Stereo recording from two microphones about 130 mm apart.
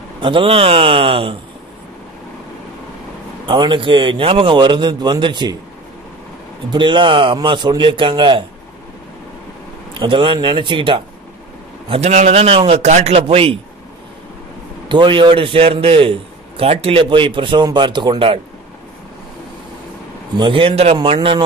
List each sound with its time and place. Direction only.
0.2 s a man's voice: 40° right (ahead or behind)
3.4 s a man's voice: 40° right (ahead or behind)
6.7 s a man's voice: 40° right (ahead or behind)
9.9 s a man's voice: 40° right (ahead or behind)
11.9 s a man's voice: 60° right (ahead or behind)
14.9 s a man's voice: 40° right (ahead or behind)
20.3 s a man's voice: 40° right (ahead or behind)